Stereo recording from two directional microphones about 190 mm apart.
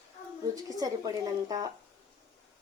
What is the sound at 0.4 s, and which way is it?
A woman's voice, 20° right (ahead or behind).